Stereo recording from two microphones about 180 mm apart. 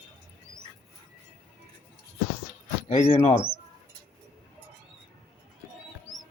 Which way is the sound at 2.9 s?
35° left (ahead or behind).